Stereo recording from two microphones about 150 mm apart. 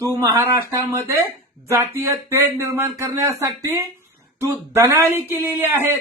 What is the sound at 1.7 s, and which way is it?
A man's voice, 15° right (ahead or behind).